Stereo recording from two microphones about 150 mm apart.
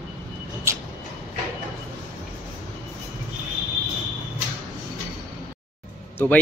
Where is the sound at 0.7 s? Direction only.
20° right (ahead or behind).